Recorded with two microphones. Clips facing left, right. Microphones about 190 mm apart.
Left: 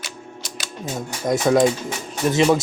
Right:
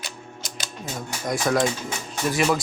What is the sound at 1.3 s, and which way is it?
Speech, 15° left (ahead or behind).